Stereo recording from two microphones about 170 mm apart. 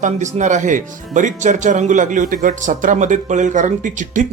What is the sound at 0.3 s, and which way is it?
Speech, 45° right (ahead or behind).